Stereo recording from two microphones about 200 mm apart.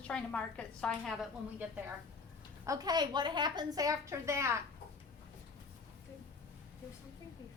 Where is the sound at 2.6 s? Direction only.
15° right (ahead or behind).